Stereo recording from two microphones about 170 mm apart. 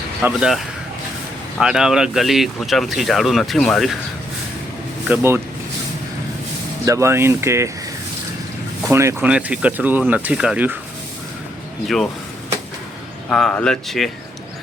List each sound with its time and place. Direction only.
0.2 s speech: 5° right (ahead or behind)
5.0 s speech: 10° right (ahead or behind)
6.8 s speech: 15° right (ahead or behind)
8.9 s speech: 15° right (ahead or behind)
13.3 s speech: 5° left (ahead or behind)